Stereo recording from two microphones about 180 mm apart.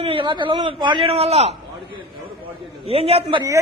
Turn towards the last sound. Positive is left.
turn(degrees=-35)  # may be behind; listen again after turning